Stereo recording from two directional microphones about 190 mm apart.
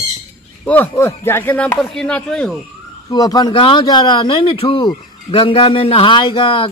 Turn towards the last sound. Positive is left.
turn(degrees=30)  # may be behind; listen again after turning